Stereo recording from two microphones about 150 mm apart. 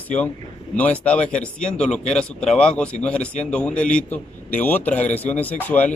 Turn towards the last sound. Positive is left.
turn(degrees=10)  # may be behind; listen again after turning